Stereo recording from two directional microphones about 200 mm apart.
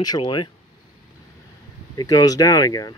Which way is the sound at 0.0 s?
20° left (ahead or behind).